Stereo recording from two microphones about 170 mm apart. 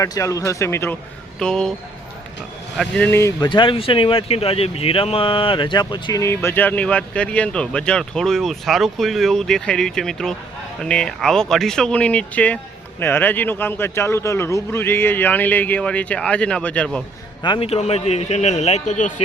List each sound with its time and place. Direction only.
0.0 s speech: 20° left (ahead or behind)
1.4 s speech: 5° left (ahead or behind)
2.7 s speech: 5° left (ahead or behind)
17.4 s a man's voice: 30° left (ahead or behind); by 19.1 s 45° left (ahead or behind)